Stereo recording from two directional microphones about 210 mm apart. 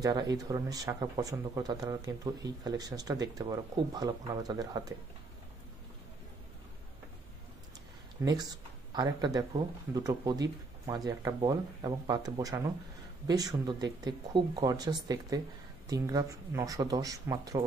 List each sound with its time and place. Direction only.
0.0 s speech: 20° right (ahead or behind)
8.2 s speech: 20° right (ahead or behind)